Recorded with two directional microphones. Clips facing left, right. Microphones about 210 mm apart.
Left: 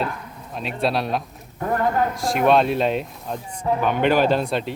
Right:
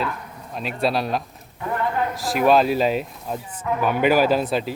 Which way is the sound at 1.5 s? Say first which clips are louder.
Left 3 dB; 45° left (ahead or behind).